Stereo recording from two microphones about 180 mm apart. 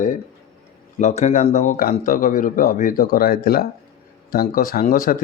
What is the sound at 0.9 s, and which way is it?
Speech, 40° left (ahead or behind).